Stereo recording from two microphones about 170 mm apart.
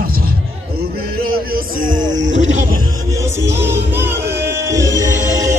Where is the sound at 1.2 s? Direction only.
55° right (ahead or behind).